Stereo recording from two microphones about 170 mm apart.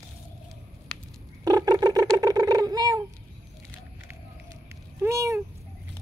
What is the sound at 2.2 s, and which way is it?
Cat, 20° right (ahead or behind).